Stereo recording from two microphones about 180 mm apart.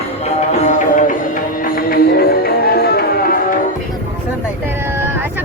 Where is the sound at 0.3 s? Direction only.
40° left (ahead or behind).